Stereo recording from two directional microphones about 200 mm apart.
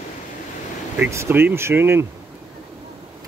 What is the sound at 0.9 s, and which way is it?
Speech, 10° right (ahead or behind).